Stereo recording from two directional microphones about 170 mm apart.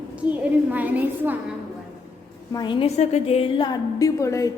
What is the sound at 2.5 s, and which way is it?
Speech, 25° left (ahead or behind).